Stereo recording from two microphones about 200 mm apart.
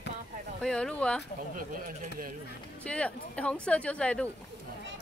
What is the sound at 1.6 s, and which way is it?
Speech, 45° right (ahead or behind).